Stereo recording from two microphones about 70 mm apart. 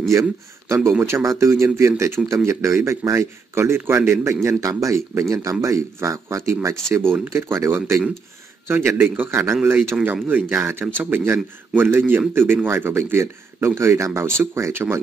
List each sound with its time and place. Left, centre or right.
0.1 s speech: right